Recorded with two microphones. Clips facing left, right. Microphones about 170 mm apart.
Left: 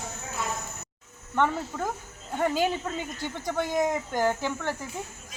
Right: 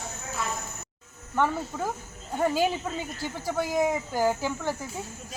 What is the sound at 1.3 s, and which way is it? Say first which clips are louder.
Speech: even; 5° right (ahead or behind).